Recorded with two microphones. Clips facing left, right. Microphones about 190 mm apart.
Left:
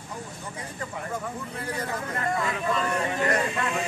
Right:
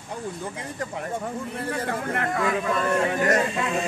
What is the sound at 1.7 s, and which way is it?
Speech, 65° right (ahead or behind).